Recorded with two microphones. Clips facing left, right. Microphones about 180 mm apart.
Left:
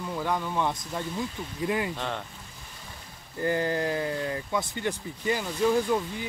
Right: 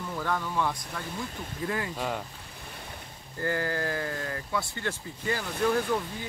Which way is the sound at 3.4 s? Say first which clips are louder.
Left 3 dB; 20° left (ahead or behind).